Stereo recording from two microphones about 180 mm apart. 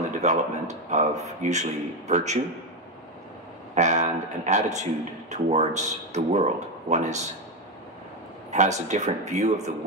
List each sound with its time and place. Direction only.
0.2 s a man's voice: 40° right (ahead or behind)
3.7 s a man's voice: 40° right (ahead or behind)
8.5 s a man's voice: 40° right (ahead or behind)